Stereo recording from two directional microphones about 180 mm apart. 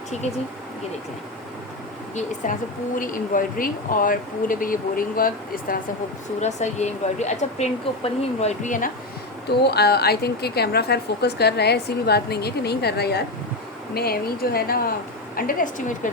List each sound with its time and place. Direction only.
0.1 s speech: 40° left (ahead or behind)
2.1 s speech: 45° left (ahead or behind)
6.4 s speech: 40° left (ahead or behind)
9.6 s a woman's voice: 65° left (ahead or behind)